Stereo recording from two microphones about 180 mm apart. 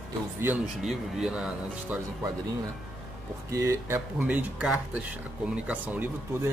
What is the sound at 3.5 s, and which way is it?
Speech, 15° right (ahead or behind).